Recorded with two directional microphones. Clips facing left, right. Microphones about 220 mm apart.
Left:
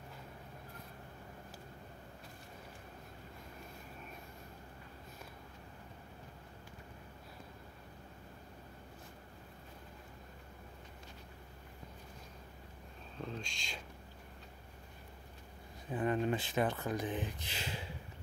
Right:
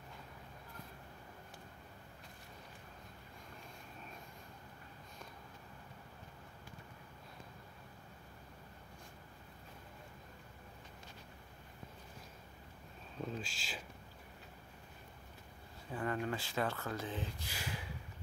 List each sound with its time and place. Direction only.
13.2 s speech: 5° right (ahead or behind)
15.9 s speech: 20° left (ahead or behind)